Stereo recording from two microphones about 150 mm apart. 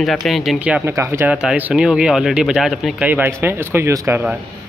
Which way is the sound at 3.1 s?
15° right (ahead or behind).